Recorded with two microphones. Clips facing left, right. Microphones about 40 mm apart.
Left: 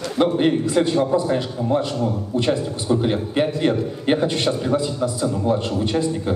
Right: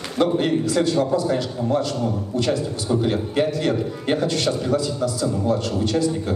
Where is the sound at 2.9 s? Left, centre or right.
Centre.